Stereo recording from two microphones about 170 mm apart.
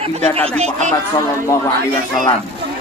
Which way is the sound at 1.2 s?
15° left (ahead or behind).